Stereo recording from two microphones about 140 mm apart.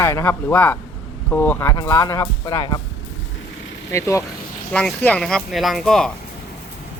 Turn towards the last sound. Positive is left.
turn(degrees=5)  # may be behind; listen again after turning